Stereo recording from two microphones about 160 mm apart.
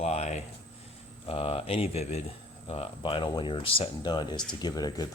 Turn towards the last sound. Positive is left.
turn(degrees=25)  # may be behind; listen again after turning